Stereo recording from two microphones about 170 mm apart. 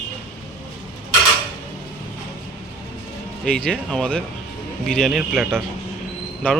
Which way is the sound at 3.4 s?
5° left (ahead or behind).